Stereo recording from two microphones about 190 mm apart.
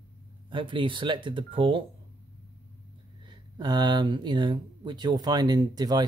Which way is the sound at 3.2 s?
20° right (ahead or behind).